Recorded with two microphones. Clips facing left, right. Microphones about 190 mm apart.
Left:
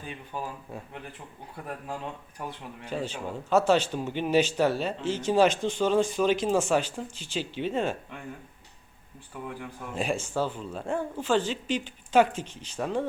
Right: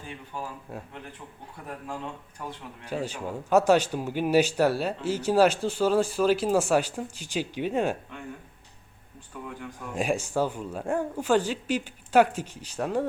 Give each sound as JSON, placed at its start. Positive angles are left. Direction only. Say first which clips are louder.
{"t": 0.3, "sound": "speech", "louder": "left 1 dB", "side_deg": 15}
{"t": 2.4, "sound": "speech", "louder": "left 1 dB", "side_deg": 15}
{"t": 2.8, "sound": "speech", "louder": "right 1 dB", "side_deg": -10}
{"t": 9.6, "sound": "speech", "louder": "even", "side_deg": 5}
{"t": 9.9, "sound": "speech", "louder": "right 2 dB", "side_deg": -10}